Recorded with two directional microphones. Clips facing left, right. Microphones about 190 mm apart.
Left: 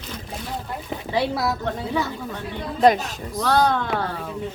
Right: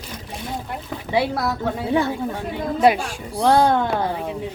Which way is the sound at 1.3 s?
5° right (ahead or behind).